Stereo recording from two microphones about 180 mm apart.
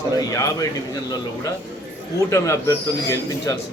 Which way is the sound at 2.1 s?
15° left (ahead or behind).